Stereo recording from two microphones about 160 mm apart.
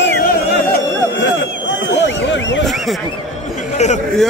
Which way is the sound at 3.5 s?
45° left (ahead or behind).